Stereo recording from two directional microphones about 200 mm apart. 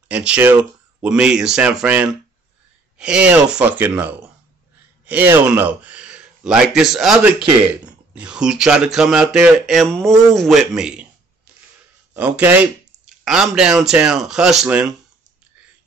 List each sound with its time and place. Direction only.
0.1 s speech: 5° right (ahead or behind)
12.1 s speech: 10° right (ahead or behind)